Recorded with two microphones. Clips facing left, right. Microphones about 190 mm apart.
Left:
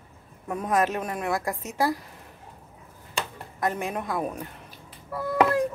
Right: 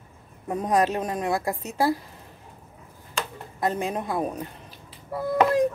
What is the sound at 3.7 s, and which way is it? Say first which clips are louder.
Speech: right 2 dB; 20° right (ahead or behind).